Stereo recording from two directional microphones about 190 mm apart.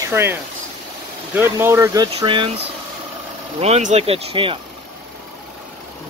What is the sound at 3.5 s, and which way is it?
Speech, 35° right (ahead or behind).